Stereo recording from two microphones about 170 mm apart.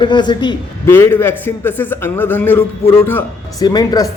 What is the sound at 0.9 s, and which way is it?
A man's voice, 15° left (ahead or behind).